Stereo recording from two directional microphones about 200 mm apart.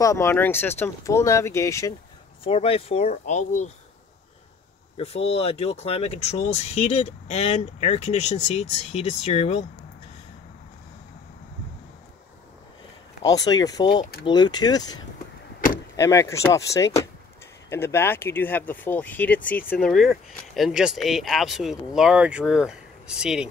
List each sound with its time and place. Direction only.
0.0 s speech: 15° left (ahead or behind)
2.4 s speech: 30° left (ahead or behind)
4.9 s speech: 30° left (ahead or behind)
13.3 s speech: 20° left (ahead or behind)
16.0 s speech: 15° left (ahead or behind); by 23.5 s 5° right (ahead or behind)